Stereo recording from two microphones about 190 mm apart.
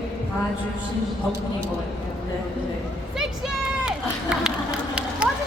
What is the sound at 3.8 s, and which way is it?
Run, 5° right (ahead or behind).